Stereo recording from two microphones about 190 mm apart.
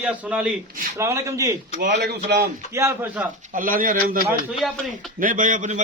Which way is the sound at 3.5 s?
45° right (ahead or behind).